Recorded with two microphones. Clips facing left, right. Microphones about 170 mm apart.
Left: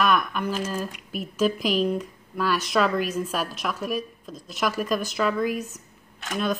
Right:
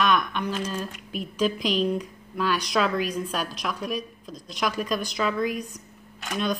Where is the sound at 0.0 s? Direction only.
5° left (ahead or behind).